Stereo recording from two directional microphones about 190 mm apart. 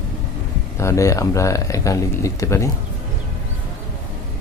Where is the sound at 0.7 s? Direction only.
15° left (ahead or behind).